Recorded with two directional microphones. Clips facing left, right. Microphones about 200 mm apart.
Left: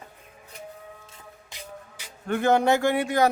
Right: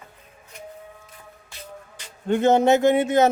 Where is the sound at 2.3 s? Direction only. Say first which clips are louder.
Right 4 dB; 20° right (ahead or behind).